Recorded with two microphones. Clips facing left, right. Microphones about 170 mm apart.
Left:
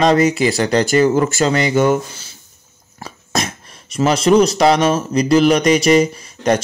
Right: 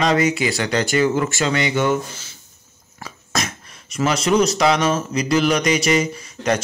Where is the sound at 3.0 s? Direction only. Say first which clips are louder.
Left 4 dB; 30° left (ahead or behind).